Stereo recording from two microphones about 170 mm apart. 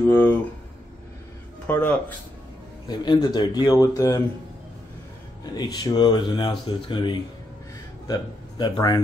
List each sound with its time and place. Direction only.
0.0 s speech: 10° left (ahead or behind)
1.7 s speech: 10° left (ahead or behind)
2.9 s speech: 25° left (ahead or behind)
5.4 s speech: 25° left (ahead or behind)